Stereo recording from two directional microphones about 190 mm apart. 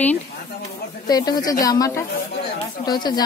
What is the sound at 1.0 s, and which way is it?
A woman's voice, 20° left (ahead or behind).